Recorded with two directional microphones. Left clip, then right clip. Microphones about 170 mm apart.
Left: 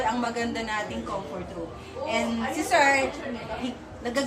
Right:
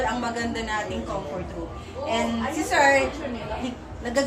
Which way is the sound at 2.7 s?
25° left (ahead or behind).